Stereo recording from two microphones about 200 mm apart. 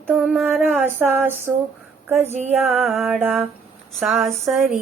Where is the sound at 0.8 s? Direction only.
10° right (ahead or behind).